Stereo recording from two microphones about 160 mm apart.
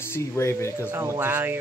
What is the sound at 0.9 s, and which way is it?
Speech, 15° right (ahead or behind).